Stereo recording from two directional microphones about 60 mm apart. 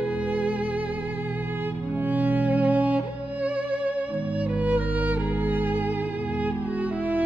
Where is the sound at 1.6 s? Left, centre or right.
Right.